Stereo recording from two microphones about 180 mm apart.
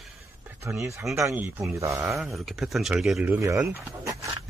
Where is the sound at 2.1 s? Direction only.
Centre (ahead or behind).